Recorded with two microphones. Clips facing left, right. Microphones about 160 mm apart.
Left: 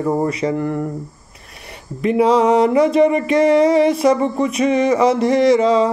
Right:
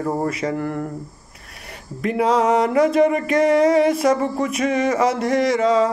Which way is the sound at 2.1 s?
Centre (ahead or behind).